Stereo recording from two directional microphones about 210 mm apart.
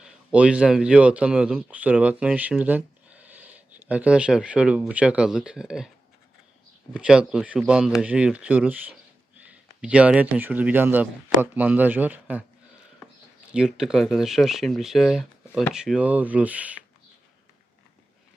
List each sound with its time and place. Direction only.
0.0 s speech: 5° right (ahead or behind)
6.9 s speech: 5° right (ahead or behind)
13.5 s speech: 5° right (ahead or behind)